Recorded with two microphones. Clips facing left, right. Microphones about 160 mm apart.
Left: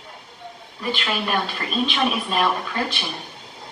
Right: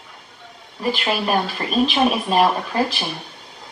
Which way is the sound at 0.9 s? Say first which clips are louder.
Right 3 dB; 35° right (ahead or behind).